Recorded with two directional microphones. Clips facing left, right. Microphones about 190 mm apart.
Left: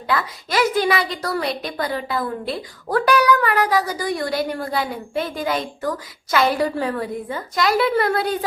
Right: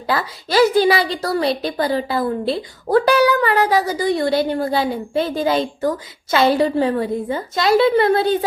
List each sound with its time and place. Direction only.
0.1 s a woman's voice: 30° right (ahead or behind)